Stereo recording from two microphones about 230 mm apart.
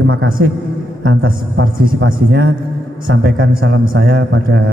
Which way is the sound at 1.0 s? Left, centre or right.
Right.